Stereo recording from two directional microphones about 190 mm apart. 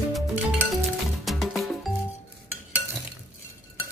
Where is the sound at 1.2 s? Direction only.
Centre (ahead or behind).